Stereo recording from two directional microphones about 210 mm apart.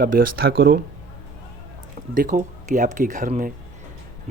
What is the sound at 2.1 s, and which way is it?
Speech, 40° right (ahead or behind).